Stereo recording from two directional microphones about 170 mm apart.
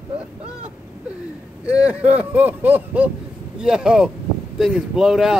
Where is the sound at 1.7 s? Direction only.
10° right (ahead or behind).